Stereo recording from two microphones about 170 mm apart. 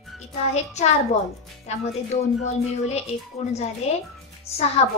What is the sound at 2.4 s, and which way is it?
Speech, 40° left (ahead or behind).